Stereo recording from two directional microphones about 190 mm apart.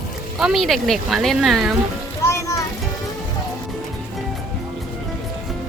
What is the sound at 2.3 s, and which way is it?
Music, 15° left (ahead or behind).